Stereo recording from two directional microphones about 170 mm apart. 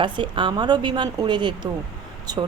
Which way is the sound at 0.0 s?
30° right (ahead or behind).